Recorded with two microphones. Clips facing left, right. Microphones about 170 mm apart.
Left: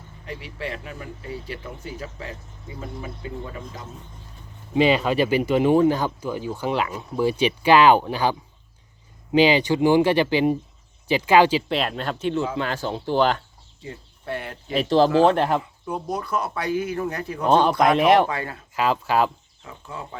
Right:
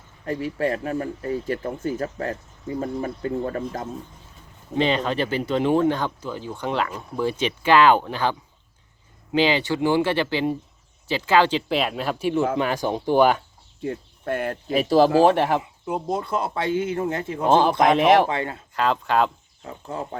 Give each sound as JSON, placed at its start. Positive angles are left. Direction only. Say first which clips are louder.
{"t": 0.3, "sound": "speech", "louder": "right 9 dB", "side_deg": -45}
{"t": 4.8, "sound": "speech", "louder": "left 3 dB", "side_deg": 10}
{"t": 11.7, "sound": "speech", "louder": "right 1 dB", "side_deg": 0}
{"t": 13.8, "sound": "speech", "louder": "right 6 dB", "side_deg": -55}
{"t": 14.7, "sound": "speech", "louder": "right 1 dB", "side_deg": -10}
{"t": 15.6, "sound": "speech", "louder": "right 2 dB", "side_deg": -25}
{"t": 17.5, "sound": "speech", "louder": "even", "side_deg": 0}
{"t": 18.3, "sound": "speech", "louder": "right 3 dB", "side_deg": -25}
{"t": 18.7, "sound": "speech", "louder": "left 1 dB", "side_deg": 5}
{"t": 19.6, "sound": "speech", "louder": "right 5 dB", "side_deg": -40}